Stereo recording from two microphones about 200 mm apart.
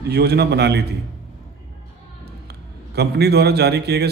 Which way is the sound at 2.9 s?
55° right (ahead or behind).